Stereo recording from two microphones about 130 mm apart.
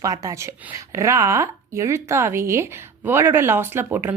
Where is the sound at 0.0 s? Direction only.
25° right (ahead or behind).